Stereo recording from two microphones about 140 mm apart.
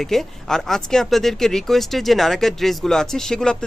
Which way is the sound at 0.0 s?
Centre (ahead or behind).